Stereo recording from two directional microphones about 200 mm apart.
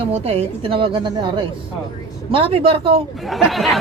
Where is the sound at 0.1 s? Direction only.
30° right (ahead or behind).